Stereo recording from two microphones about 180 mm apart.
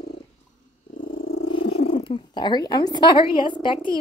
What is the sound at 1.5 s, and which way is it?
Purr, 30° left (ahead or behind).